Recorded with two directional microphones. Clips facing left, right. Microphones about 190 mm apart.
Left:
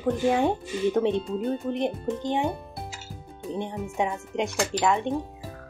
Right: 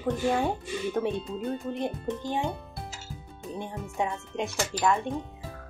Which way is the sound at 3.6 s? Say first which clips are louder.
Left 3 dB; 20° left (ahead or behind).